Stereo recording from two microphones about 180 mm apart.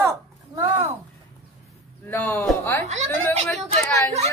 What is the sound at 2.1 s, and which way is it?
Speech, 10° left (ahead or behind).